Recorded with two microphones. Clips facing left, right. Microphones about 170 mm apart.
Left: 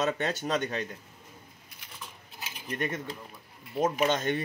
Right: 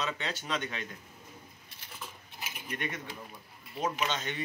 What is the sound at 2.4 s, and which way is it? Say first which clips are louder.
Mechanisms: even; 10° right (ahead or behind).